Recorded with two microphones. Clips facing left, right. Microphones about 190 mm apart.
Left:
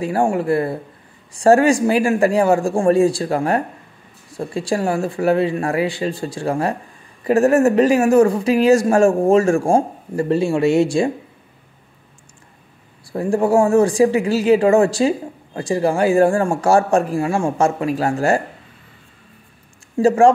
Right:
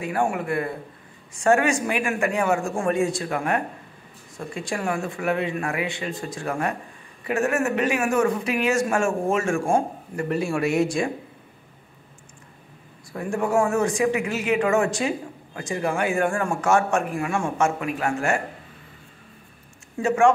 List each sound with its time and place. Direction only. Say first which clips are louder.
0.0 s speech: left 6 dB; 30° left (ahead or behind)
13.1 s speech: left 7 dB; 30° left (ahead or behind)
20.0 s speech: left 6 dB; 35° left (ahead or behind)